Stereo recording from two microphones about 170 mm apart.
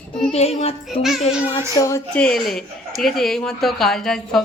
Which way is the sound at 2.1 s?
5° left (ahead or behind).